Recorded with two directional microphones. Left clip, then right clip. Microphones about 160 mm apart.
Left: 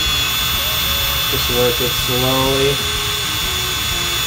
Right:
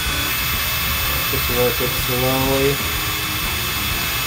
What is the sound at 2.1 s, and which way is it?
Speech, 25° left (ahead or behind).